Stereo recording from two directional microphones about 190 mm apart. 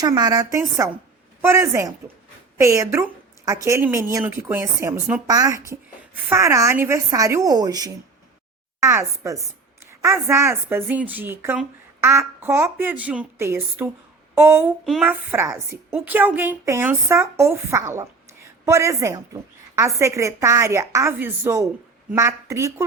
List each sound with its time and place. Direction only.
0.0 s a woman's voice: 20° right (ahead or behind)